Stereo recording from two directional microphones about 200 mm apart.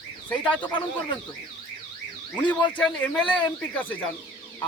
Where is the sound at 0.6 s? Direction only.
20° left (ahead or behind).